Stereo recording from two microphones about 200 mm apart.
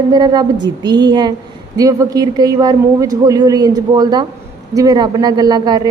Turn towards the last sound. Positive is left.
turn(degrees=-20)  # may be behind; listen again after turning